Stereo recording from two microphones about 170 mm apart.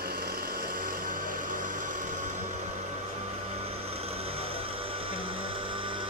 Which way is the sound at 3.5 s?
35° right (ahead or behind).